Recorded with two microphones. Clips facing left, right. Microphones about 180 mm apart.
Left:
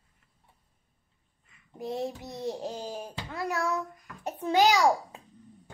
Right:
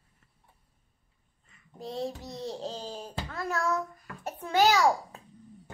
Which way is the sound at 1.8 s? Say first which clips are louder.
Left 2 dB; 15° left (ahead or behind).